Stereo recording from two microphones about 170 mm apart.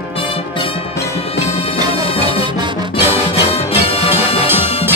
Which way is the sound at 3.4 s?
35° left (ahead or behind).